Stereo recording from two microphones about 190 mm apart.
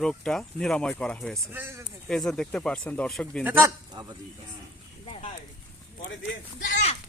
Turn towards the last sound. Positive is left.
turn(degrees=40)  # may be behind; listen again after turning